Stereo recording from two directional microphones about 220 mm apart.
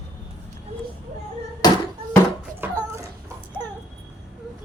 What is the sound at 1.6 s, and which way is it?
Hands, 20° left (ahead or behind).